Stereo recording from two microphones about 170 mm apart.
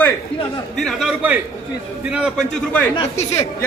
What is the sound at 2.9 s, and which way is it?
Speech, 35° left (ahead or behind).